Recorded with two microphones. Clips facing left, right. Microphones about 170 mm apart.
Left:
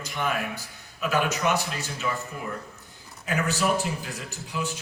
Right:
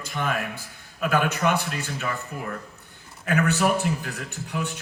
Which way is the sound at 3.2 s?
60° right (ahead or behind).